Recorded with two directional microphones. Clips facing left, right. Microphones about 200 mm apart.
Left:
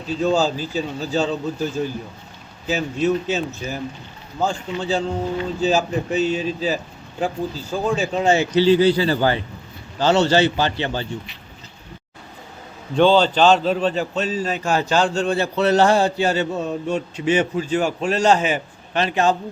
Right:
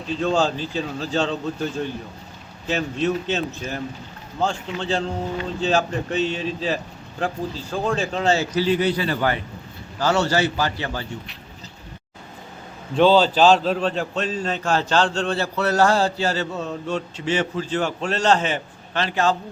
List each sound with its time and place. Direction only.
0.0 s speech: 5° left (ahead or behind)
8.5 s a man's voice: 30° left (ahead or behind)
13.0 s a man's voice: centre (ahead or behind); by 19.4 s 20° left (ahead or behind)